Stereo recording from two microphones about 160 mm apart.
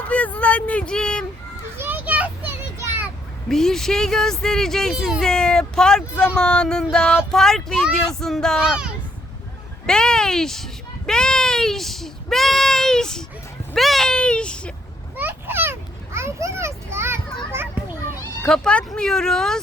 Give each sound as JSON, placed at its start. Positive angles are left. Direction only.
{"t": 0.1, "sound": "speech", "side_deg": 10}
{"t": 1.8, "sound": "children playing", "side_deg": -10}
{"t": 3.5, "sound": "a child's voice", "side_deg": 5}
{"t": 13.7, "sound": "a sound", "side_deg": 0}
{"t": 15.1, "sound": "a sound", "side_deg": -10}
{"t": 16.1, "sound": "children playing", "side_deg": -15}
{"t": 18.4, "sound": "speech", "side_deg": 5}